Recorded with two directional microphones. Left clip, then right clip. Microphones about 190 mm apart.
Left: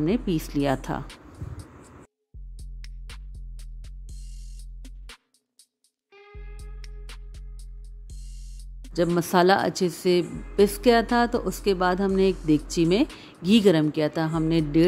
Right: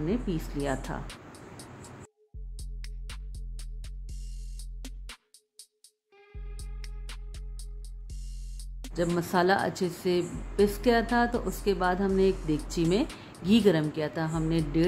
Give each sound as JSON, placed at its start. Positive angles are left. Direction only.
{"t": 0.0, "sound": "speech", "side_deg": 45}
{"t": 1.0, "sound": "vehicle", "side_deg": 0}
{"t": 2.5, "sound": "music", "side_deg": 0}
{"t": 8.9, "sound": "a woman's voice", "side_deg": 40}